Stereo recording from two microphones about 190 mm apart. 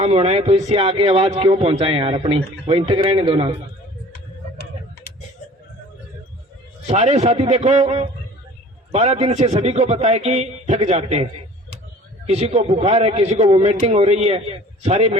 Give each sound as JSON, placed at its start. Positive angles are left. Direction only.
{"t": 0.0, "sound": "speech", "side_deg": -30}
{"t": 6.8, "sound": "speech", "side_deg": -35}